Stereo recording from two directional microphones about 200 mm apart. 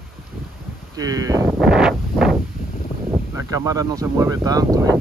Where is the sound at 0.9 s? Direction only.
20° right (ahead or behind); by 2.3 s centre (ahead or behind).